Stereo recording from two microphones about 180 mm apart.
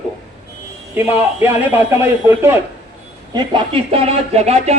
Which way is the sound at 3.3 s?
30° right (ahead or behind).